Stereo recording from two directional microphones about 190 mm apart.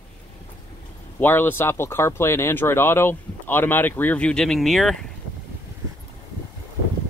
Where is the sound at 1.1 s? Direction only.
10° left (ahead or behind).